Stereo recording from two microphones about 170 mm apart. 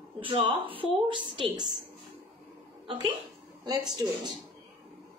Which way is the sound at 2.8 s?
30° right (ahead or behind).